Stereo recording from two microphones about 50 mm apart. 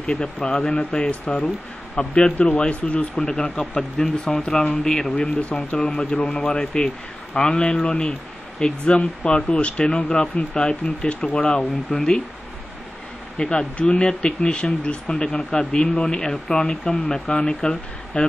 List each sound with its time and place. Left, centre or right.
0.0 s speech: centre
3.2 s speech: centre
5.1 s speech: left
13.4 s speech: centre